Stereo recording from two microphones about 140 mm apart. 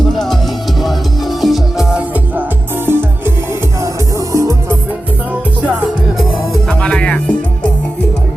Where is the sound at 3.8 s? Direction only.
20° right (ahead or behind).